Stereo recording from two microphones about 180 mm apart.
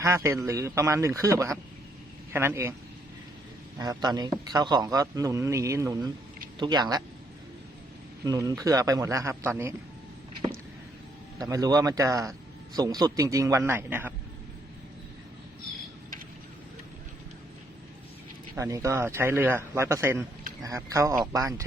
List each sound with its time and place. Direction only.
0.0 s speech: 15° right (ahead or behind)
3.8 s a man's voice: 20° right (ahead or behind)
8.2 s speech: 20° right (ahead or behind)
11.3 s a man's voice: 20° right (ahead or behind)
18.5 s speech: 15° right (ahead or behind)